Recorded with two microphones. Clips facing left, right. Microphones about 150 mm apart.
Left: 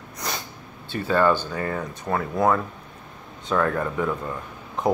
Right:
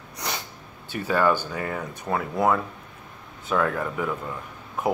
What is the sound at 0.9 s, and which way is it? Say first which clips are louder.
Speech: left 2 dB; 10° right (ahead or behind).